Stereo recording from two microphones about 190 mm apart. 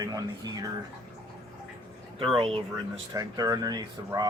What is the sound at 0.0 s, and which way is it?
Speech, 20° right (ahead or behind).